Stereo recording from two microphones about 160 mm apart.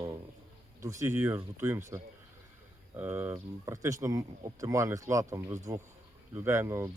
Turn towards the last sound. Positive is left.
turn(degrees=-15)  # may be behind; listen again after turning